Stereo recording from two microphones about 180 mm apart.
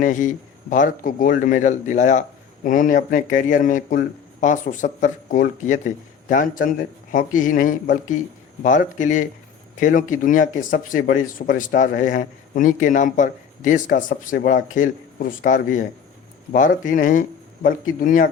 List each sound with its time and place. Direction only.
0.0 s speech: 45° left (ahead or behind)